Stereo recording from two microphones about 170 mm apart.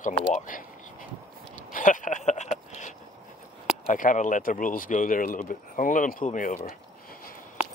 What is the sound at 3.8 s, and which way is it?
Speech, 50° left (ahead or behind).